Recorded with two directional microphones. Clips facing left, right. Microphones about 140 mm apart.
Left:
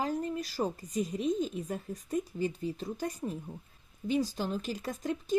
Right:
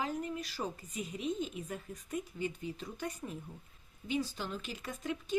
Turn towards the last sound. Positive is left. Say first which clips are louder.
# left 5 dB
turn(degrees=40)  # may be behind; listen again after turning